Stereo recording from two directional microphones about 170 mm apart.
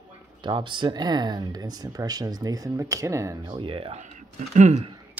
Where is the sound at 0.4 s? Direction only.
25° right (ahead or behind).